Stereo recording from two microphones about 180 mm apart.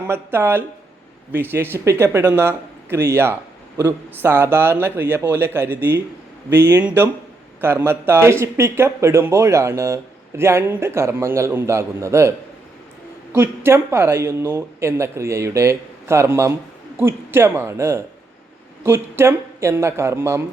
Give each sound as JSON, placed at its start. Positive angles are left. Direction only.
{"t": 0.1, "sound": "speech", "side_deg": -10}
{"t": 13.3, "sound": "speech", "side_deg": -15}